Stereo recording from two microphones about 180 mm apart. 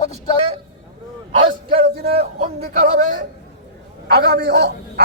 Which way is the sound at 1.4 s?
30° right (ahead or behind).